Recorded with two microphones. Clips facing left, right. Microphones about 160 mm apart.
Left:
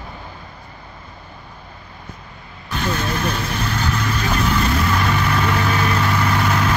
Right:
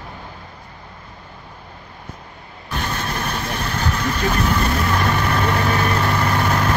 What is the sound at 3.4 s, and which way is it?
Vehicle, 35° right (ahead or behind).